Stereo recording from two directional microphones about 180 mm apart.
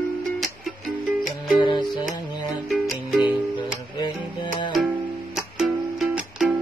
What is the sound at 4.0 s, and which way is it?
Music, 25° left (ahead or behind).